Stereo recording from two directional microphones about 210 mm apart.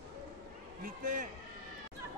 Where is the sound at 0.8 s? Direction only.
40° right (ahead or behind).